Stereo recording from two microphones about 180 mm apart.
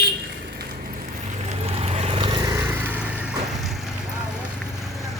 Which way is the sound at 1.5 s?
35° right (ahead or behind).